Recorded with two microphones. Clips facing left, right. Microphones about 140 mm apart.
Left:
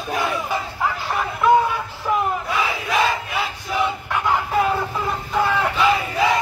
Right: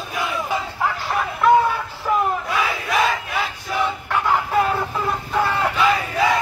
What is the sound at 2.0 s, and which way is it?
Battle cry, centre (ahead or behind).